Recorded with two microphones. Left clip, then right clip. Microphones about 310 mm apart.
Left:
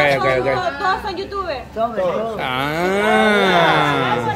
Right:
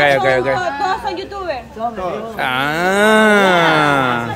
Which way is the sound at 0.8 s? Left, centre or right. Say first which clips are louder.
Right 1 dB; right.